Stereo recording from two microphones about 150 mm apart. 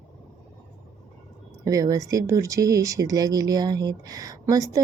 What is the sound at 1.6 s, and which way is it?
A woman's voice, 25° right (ahead or behind).